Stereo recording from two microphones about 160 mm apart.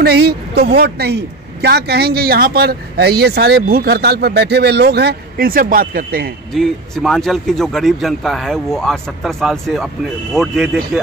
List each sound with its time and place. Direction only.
0.0 s a woman's voice: 90° right; by 6.3 s 65° right (ahead or behind)
6.5 s speech: centre (ahead or behind)